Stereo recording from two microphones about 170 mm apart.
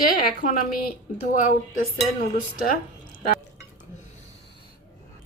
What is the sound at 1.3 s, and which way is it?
Speech, 50° left (ahead or behind).